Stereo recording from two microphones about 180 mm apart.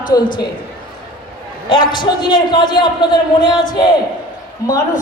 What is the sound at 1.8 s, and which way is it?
A man's voice, 25° left (ahead or behind).